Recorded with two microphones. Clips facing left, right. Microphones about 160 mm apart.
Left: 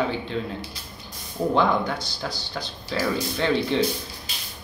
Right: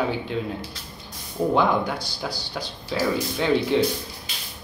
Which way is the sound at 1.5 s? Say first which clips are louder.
Even; 10° right (ahead or behind).